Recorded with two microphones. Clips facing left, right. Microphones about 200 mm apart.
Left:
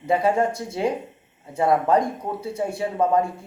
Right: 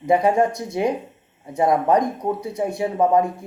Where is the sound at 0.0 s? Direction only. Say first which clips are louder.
Right 3 dB; 15° right (ahead or behind).